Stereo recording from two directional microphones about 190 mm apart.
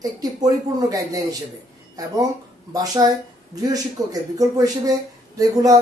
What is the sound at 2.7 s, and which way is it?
Speech, 20° right (ahead or behind).